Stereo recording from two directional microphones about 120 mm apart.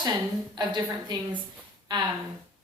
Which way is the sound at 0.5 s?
35° right (ahead or behind).